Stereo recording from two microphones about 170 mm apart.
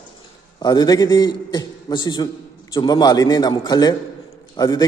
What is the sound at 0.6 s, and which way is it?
A man's voice, 25° left (ahead or behind).